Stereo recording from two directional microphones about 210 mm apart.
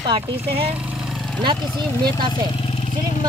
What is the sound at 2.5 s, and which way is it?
Vehicle, 30° left (ahead or behind).